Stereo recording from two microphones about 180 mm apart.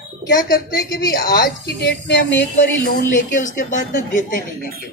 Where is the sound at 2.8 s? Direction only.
45° left (ahead or behind).